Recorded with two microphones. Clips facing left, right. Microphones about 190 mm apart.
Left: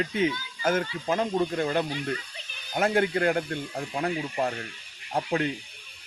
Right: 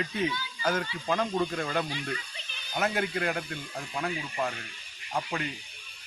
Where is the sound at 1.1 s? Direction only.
20° left (ahead or behind).